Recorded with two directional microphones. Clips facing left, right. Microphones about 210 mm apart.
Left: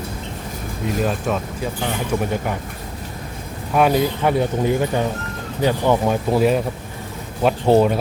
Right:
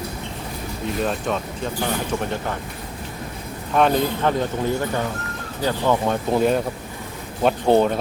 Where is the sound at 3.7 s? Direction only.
10° left (ahead or behind).